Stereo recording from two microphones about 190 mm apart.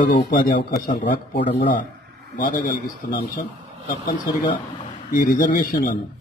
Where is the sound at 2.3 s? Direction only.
45° left (ahead or behind).